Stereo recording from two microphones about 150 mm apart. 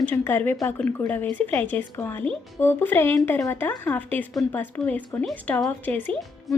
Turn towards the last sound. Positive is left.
turn(degrees=10)  # may be behind; listen again after turning